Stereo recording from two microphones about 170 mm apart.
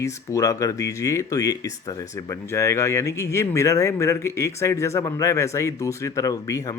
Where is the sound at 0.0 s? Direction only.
15° left (ahead or behind).